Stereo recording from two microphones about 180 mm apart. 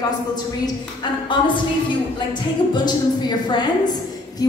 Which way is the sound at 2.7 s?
25° left (ahead or behind).